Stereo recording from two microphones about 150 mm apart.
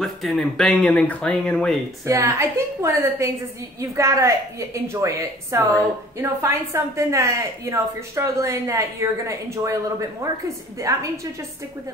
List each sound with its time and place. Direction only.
0.0 s speech: centre (ahead or behind)
2.0 s a woman's voice: 20° right (ahead or behind)